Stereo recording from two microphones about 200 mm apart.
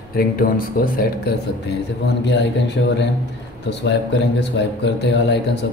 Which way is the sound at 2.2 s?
60° left (ahead or behind).